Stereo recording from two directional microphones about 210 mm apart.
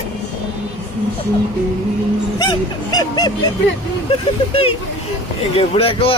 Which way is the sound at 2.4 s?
20° left (ahead or behind).